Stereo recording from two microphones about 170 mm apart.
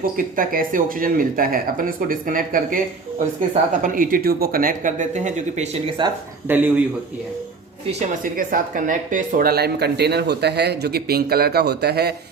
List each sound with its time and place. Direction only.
0.0 s speech: 55° right (ahead or behind)
6.5 s speech: 10° right (ahead or behind)
8.2 s speech: 55° right (ahead or behind); by 12.1 s 70° right (ahead or behind)